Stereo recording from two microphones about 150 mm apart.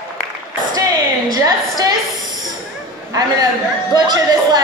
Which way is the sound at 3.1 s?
25° right (ahead or behind).